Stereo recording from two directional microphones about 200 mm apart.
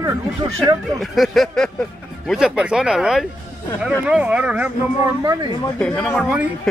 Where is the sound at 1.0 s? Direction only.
Centre (ahead or behind).